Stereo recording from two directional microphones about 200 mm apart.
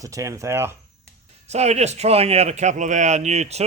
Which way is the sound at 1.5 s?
35° right (ahead or behind).